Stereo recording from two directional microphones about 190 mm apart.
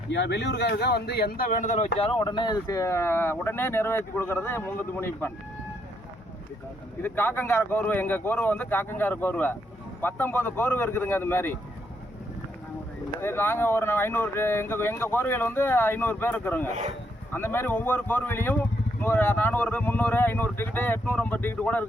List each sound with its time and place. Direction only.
0.1 s speech: 65° left (ahead or behind); by 1.9 s 40° left (ahead or behind)
2.0 s speech: 25° left (ahead or behind); by 5.3 s 10° left (ahead or behind)
7.0 s speech: 10° left (ahead or behind)
13.1 s speech: 10° left (ahead or behind)